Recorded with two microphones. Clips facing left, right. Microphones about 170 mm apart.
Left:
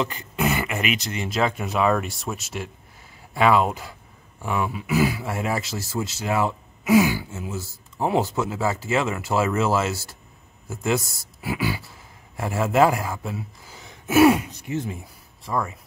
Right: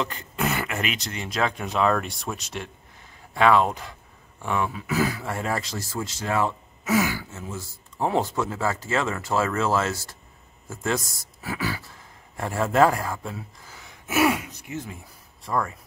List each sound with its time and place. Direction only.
0.0 s speech: 5° left (ahead or behind)
14.0 s speech: 30° left (ahead or behind)
15.4 s speech: 5° left (ahead or behind)